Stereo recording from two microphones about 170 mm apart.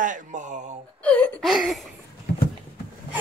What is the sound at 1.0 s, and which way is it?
Whimper, 10° left (ahead or behind).